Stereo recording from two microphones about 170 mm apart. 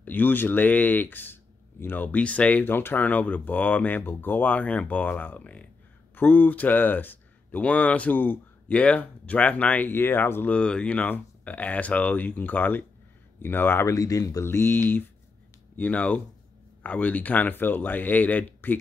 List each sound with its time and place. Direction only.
0.0 s speech: 10° left (ahead or behind)